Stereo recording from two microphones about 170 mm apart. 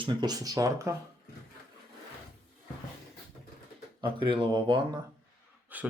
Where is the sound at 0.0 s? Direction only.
25° right (ahead or behind).